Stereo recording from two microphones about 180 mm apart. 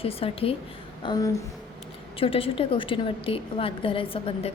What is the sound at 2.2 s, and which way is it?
A woman's voice, 30° left (ahead or behind).